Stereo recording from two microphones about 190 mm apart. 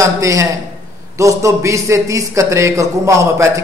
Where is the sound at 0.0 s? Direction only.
15° right (ahead or behind).